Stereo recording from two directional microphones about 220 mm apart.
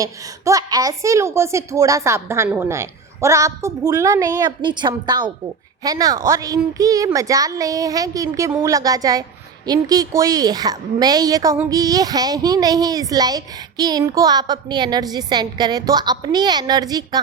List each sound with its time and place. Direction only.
0.0 s a woman's voice: 15° right (ahead or behind)